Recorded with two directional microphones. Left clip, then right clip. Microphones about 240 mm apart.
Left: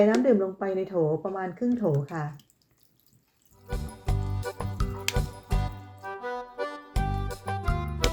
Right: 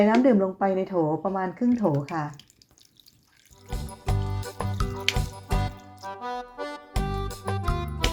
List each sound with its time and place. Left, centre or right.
0.0 s speech: right
3.7 s music: centre